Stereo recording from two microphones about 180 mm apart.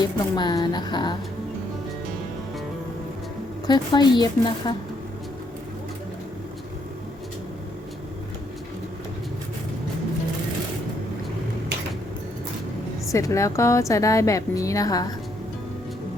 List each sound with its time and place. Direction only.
0.0 s a woman's voice: 25° left (ahead or behind)
3.7 s a woman's voice: 25° left (ahead or behind)
13.1 s a woman's voice: 15° left (ahead or behind)